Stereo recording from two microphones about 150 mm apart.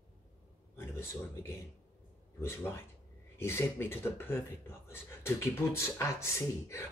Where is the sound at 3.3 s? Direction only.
15° left (ahead or behind).